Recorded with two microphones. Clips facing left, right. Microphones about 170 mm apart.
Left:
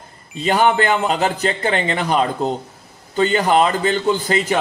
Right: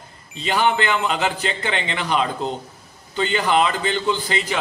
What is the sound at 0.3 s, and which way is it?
A man's voice, 45° left (ahead or behind).